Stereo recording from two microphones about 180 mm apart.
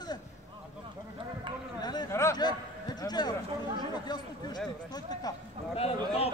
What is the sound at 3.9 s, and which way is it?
Speech, 25° left (ahead or behind).